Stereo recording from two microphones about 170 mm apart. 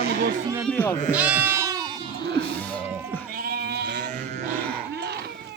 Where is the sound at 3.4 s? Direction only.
65° right (ahead or behind); by 4.1 s 90° right.